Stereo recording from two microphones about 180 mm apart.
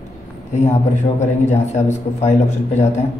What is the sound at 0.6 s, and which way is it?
A man's voice, 40° left (ahead or behind).